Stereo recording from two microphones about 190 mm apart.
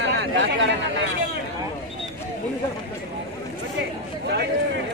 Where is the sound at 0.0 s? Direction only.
70° right (ahead or behind).